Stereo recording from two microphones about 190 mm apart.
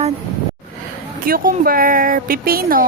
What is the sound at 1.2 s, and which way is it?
A woman's voice, 50° right (ahead or behind).